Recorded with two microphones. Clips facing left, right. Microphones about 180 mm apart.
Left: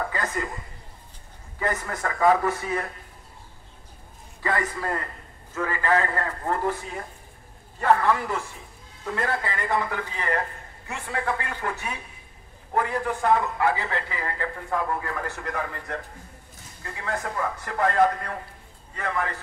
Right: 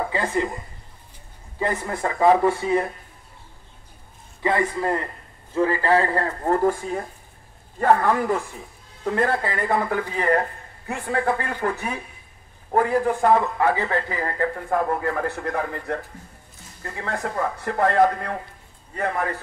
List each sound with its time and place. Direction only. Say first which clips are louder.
0.1 s a woman's voice: right 6 dB; 25° right (ahead or behind)
1.6 s speech: right 3 dB; 25° right (ahead or behind)
4.4 s speech: right 5 dB; 20° right (ahead or behind); by 19.3 s 35° right (ahead or behind)